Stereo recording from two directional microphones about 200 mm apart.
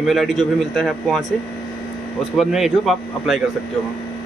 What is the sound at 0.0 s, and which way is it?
A man's voice, centre (ahead or behind).